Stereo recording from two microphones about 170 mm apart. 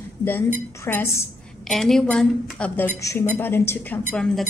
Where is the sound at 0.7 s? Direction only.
15° left (ahead or behind).